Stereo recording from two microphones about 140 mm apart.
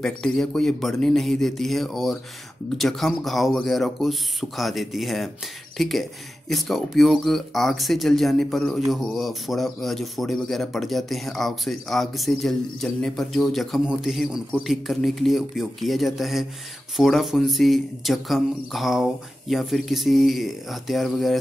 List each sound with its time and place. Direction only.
0.0 s speech: 5° left (ahead or behind)